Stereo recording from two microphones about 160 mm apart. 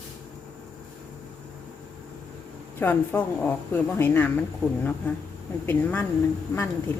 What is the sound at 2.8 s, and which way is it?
A woman's voice, 10° left (ahead or behind).